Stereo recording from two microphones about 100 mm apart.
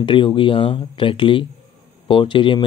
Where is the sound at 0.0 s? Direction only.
55° left (ahead or behind).